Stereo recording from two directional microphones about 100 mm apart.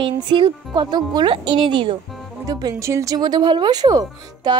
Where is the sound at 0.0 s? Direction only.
50° right (ahead or behind).